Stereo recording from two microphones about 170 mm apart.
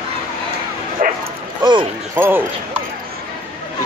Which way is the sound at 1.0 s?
55° right (ahead or behind).